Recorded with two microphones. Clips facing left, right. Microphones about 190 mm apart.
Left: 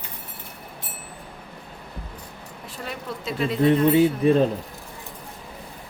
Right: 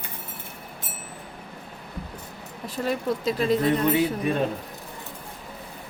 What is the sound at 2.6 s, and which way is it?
Speech, 40° right (ahead or behind).